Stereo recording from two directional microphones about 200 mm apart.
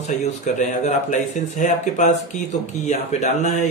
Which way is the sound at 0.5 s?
35° left (ahead or behind).